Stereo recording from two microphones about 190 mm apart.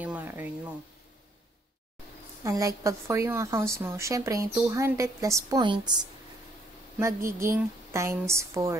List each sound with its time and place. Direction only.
0.0 s a sound: 10° right (ahead or behind)
2.4 s a woman's voice: 15° right (ahead or behind)
7.0 s a woman's voice: 15° right (ahead or behind)